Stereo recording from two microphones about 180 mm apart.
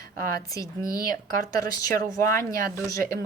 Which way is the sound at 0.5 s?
20° left (ahead or behind).